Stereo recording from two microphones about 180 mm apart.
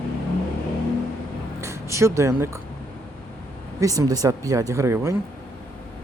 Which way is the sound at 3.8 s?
20° right (ahead or behind).